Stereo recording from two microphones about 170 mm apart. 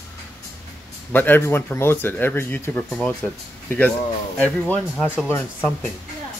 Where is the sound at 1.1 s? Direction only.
10° left (ahead or behind).